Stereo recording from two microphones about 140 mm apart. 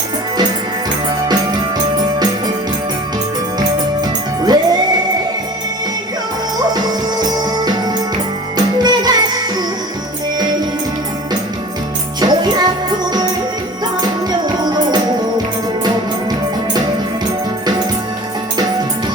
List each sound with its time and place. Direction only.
3.6 s music: 30° right (ahead or behind)
6.7 s music: 30° right (ahead or behind)
12.2 s music: 30° right (ahead or behind)
14.0 s music: 30° right (ahead or behind)